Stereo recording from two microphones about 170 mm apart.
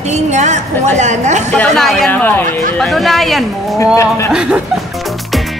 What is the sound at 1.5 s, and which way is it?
Speech, 5° left (ahead or behind).